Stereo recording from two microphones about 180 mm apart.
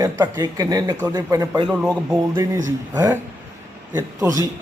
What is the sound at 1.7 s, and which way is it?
A man's voice, 5° right (ahead or behind).